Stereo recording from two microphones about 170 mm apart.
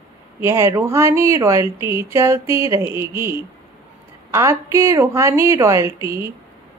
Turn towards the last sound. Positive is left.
turn(degrees=-15)  # may be behind; listen again after turning